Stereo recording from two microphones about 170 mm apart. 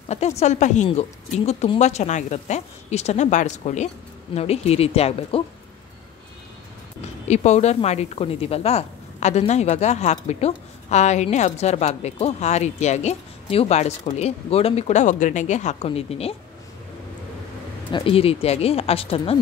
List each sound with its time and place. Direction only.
0.1 s speech: 40° left (ahead or behind)
7.2 s speech: 40° left (ahead or behind)
17.9 s speech: 35° left (ahead or behind)